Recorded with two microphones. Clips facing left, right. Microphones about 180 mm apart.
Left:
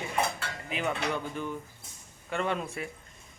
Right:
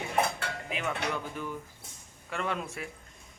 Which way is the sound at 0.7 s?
Centre (ahead or behind).